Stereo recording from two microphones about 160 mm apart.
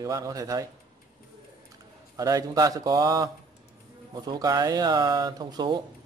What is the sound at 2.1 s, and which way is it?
A man's voice, 20° right (ahead or behind).